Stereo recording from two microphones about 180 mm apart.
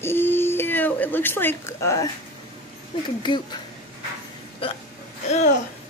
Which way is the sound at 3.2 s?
25° left (ahead or behind).